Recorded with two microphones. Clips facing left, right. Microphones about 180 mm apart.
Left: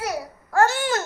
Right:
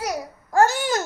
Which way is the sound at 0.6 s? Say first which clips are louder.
Even; 40° right (ahead or behind).